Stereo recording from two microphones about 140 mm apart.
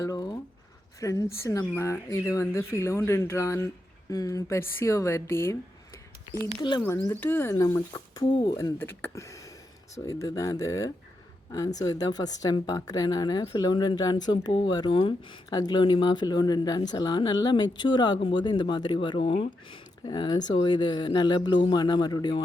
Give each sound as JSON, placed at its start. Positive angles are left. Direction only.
{"t": 0.0, "sound": "a sound", "side_deg": 25}
{"t": 0.9, "sound": "speech", "side_deg": 25}
{"t": 6.6, "sound": "speech", "side_deg": 35}
{"t": 6.8, "sound": "speech", "side_deg": 20}
{"t": 8.5, "sound": "speech", "side_deg": 20}